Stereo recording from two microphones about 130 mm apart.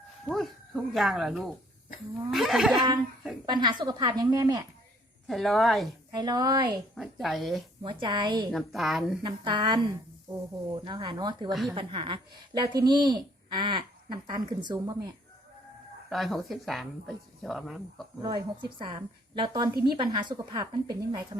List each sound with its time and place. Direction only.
0.3 s speech: centre (ahead or behind)
3.4 s speech: 35° right (ahead or behind)
5.3 s speech: centre (ahead or behind)
6.1 s speech: 30° right (ahead or behind)
6.9 s speech: centre (ahead or behind)
7.8 s speech: 35° right (ahead or behind)
8.5 s speech: centre (ahead or behind)
9.2 s speech: 35° right (ahead or behind)
16.0 s speech: centre (ahead or behind)
18.2 s speech: 30° right (ahead or behind)